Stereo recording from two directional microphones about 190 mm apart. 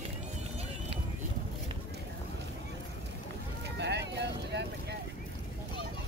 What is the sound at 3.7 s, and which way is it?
Vehicle, 65° right (ahead or behind).